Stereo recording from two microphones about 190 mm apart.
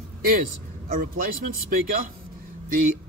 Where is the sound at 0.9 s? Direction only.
50° right (ahead or behind).